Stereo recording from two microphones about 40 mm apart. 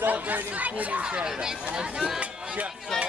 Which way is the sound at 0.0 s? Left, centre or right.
Right.